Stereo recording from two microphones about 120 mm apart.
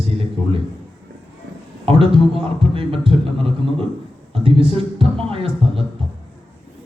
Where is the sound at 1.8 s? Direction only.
50° right (ahead or behind).